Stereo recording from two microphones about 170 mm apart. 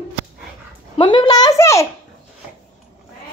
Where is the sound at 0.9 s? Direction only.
30° left (ahead or behind).